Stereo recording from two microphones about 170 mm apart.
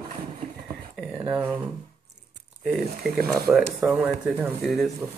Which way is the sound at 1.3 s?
10° right (ahead or behind).